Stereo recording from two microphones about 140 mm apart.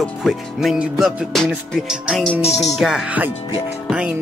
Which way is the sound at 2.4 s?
50° left (ahead or behind).